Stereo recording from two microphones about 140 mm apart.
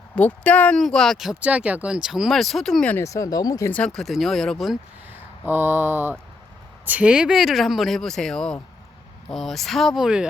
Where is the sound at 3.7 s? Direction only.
5° left (ahead or behind).